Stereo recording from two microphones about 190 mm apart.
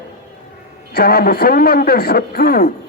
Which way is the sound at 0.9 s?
55° left (ahead or behind).